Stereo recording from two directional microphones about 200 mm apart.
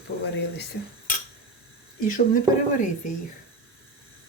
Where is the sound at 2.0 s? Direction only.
40° left (ahead or behind).